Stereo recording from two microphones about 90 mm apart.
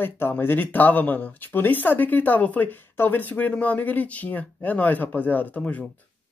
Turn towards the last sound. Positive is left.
turn(degrees=15)  # may be behind; listen again after turning